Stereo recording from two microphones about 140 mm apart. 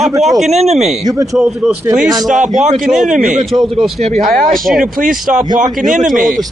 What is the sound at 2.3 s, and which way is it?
Speech, 65° right (ahead or behind).